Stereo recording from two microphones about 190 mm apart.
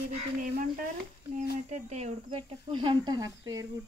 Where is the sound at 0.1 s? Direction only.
45° right (ahead or behind).